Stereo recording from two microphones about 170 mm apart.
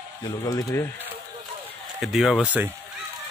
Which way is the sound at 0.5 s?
20° left (ahead or behind).